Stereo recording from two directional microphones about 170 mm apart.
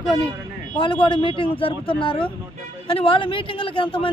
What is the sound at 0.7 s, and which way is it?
Speech, 30° left (ahead or behind).